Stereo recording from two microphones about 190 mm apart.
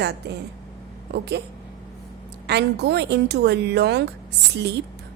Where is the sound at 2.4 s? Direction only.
60° right (ahead or behind).